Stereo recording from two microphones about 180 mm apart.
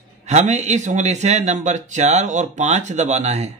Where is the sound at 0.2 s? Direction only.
40° right (ahead or behind).